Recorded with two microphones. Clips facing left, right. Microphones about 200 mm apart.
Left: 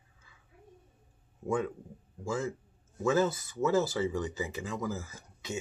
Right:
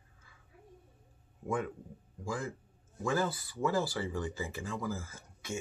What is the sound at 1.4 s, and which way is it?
Speech, 25° left (ahead or behind).